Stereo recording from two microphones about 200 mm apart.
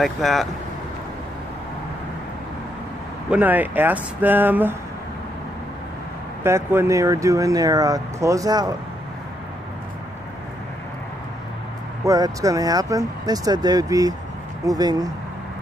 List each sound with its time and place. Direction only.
0.0 s speech: centre (ahead or behind)
3.3 s speech: 10° right (ahead or behind)
6.4 s speech: 10° right (ahead or behind)
12.0 s speech: 15° right (ahead or behind)